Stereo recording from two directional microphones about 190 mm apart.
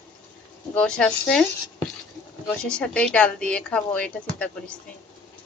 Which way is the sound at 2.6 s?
5° left (ahead or behind).